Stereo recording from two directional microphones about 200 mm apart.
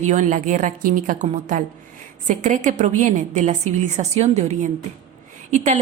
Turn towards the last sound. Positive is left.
turn(degrees=-35)  # may be behind; listen again after turning